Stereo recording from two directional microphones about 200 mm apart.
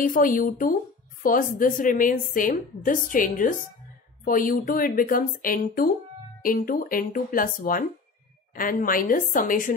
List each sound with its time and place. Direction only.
0.0 s a woman's voice: 40° left (ahead or behind)